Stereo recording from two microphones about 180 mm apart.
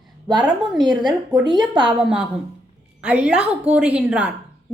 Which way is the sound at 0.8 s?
25° right (ahead or behind).